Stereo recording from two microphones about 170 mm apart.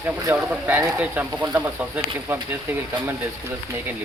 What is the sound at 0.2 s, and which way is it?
Speech, 15° right (ahead or behind).